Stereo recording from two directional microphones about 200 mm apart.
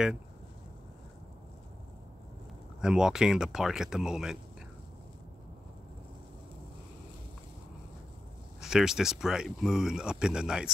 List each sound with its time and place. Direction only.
2.8 s speech: 5° right (ahead or behind)
8.5 s speech: 5° right (ahead or behind)